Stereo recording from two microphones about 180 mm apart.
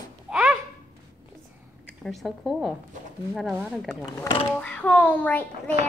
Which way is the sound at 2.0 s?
Centre (ahead or behind).